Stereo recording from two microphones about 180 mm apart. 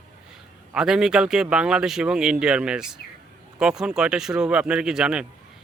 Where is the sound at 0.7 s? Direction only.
5° right (ahead or behind).